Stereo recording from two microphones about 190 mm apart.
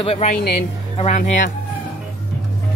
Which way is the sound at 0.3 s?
55° left (ahead or behind).